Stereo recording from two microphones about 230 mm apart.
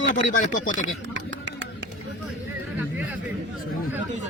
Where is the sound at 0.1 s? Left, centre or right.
Left.